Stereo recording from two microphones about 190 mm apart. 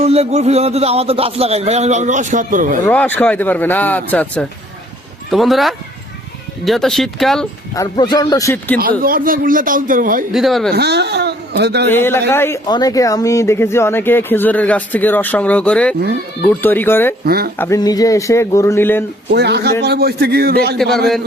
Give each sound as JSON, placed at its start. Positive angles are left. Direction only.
{"t": 0.0, "sound": "speech", "side_deg": -35}
{"t": 2.8, "sound": "speech", "side_deg": 10}
{"t": 7.8, "sound": "speech", "side_deg": 20}
{"t": 8.8, "sound": "a man's voice", "side_deg": -50}
{"t": 10.3, "sound": "speech", "side_deg": 0}
{"t": 10.7, "sound": "speech", "side_deg": -60}
{"t": 11.9, "sound": "speech", "side_deg": 10}
{"t": 17.2, "sound": "a man's voice", "side_deg": -55}
{"t": 17.6, "sound": "speech", "side_deg": 15}
{"t": 19.3, "sound": "a man's voice", "side_deg": -60}